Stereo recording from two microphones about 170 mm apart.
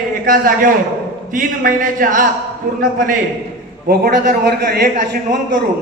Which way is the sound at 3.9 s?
65° right (ahead or behind).